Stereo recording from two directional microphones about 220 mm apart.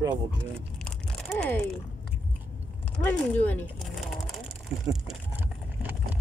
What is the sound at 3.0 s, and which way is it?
Speech, 5° left (ahead or behind).